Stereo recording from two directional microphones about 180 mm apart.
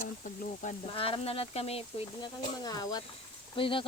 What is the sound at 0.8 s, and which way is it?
Speech, 30° left (ahead or behind).